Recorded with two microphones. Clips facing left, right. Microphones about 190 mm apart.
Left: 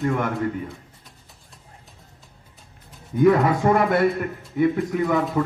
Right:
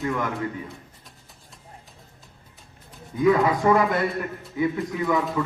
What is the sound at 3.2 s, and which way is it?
A man's voice, 55° left (ahead or behind).